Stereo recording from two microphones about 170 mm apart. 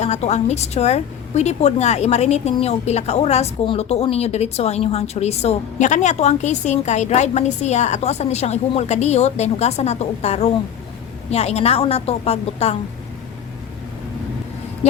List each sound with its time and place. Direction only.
0.0 s a woman's voice: 40° left (ahead or behind)